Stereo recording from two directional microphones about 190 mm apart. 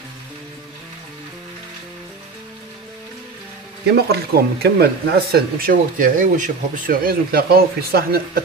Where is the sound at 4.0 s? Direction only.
55° right (ahead or behind).